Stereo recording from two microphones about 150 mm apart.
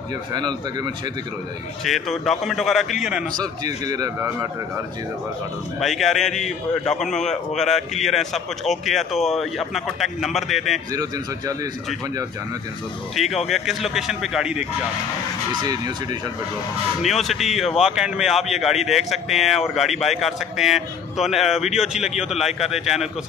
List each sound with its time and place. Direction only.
0.3 s a man's voice: 30° right (ahead or behind)
1.9 s speech: centre (ahead or behind)
3.3 s a man's voice: 25° right (ahead or behind)
5.8 s speech: centre (ahead or behind)
10.9 s a man's voice: 25° right (ahead or behind)
13.1 s speech: centre (ahead or behind)
15.6 s a man's voice: 25° right (ahead or behind)
17.0 s speech: centre (ahead or behind)